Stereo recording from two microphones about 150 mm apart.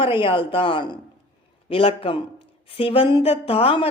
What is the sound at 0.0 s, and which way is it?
A woman's voice, 35° left (ahead or behind).